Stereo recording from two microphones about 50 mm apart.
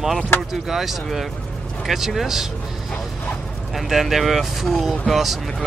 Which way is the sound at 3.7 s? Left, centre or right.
Centre.